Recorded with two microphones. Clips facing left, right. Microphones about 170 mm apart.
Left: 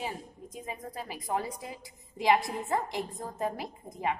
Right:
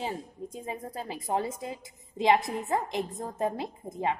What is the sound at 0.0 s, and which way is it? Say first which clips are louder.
A woman's voice: right 3 dB; 25° right (ahead or behind).